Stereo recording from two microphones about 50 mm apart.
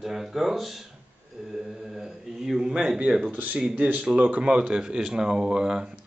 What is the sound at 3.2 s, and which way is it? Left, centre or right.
Speech, right.